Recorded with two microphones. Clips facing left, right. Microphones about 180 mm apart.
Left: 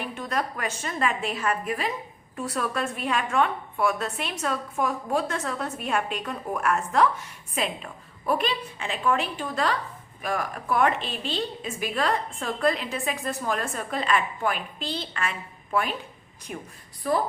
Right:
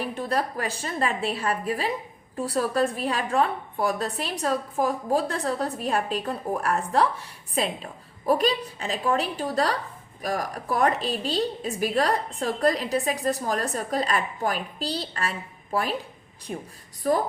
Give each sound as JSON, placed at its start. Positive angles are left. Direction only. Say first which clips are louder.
{"t": 0.0, "sound": "a woman's voice", "louder": "right 3 dB", "side_deg": -35}
{"t": 17.0, "sound": "speech", "louder": "right 2 dB", "side_deg": -45}